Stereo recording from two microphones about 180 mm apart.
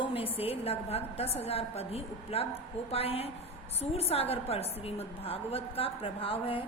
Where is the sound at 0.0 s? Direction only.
30° left (ahead or behind).